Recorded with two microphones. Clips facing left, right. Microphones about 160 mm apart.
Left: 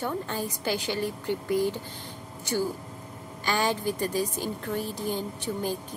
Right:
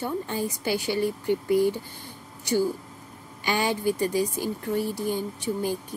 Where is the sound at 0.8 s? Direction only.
15° right (ahead or behind).